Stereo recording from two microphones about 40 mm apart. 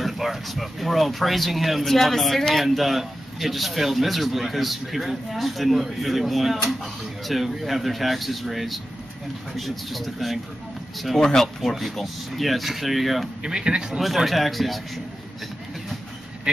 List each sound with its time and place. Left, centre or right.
0.0 s a man's voice: centre
11.1 s a man's voice: centre
13.4 s speech: centre
13.9 s a man's voice: centre